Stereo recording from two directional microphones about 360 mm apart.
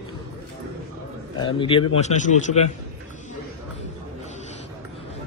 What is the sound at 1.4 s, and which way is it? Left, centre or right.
A man's voice, centre.